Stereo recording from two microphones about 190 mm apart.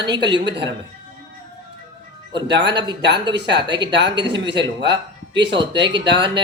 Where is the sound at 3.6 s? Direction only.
25° right (ahead or behind).